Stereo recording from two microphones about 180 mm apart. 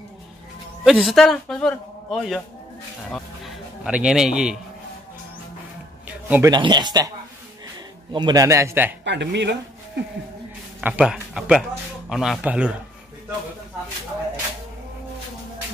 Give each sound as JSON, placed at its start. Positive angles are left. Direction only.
{"t": 0.9, "sound": "a man's voice", "side_deg": 0}
{"t": 6.0, "sound": "a sound", "side_deg": -10}
{"t": 6.5, "sound": "speech", "side_deg": -25}
{"t": 8.1, "sound": "a man's voice", "side_deg": -25}
{"t": 9.0, "sound": "speech", "side_deg": -75}
{"t": 10.8, "sound": "a man's voice", "side_deg": -5}